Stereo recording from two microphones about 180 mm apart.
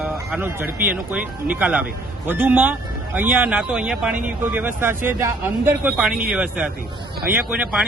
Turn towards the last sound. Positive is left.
turn(degrees=-5)  # may be behind; listen again after turning